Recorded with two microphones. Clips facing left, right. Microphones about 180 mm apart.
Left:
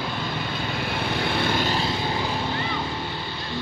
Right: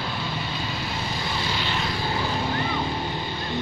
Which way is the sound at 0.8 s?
60° left (ahead or behind).